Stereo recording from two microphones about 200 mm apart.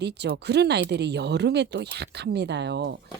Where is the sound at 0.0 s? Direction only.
55° right (ahead or behind).